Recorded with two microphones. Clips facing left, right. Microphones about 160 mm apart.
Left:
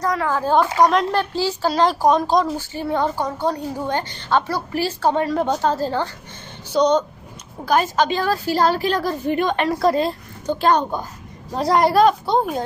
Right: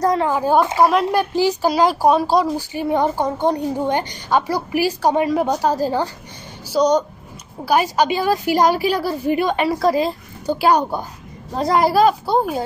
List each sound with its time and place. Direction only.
0.0 s a woman's voice: 25° right (ahead or behind)
0.3 s a woman's voice: 10° right (ahead or behind)